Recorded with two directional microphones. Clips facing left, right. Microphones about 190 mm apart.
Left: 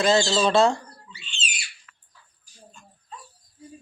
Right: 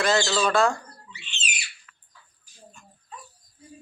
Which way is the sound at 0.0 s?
25° left (ahead or behind).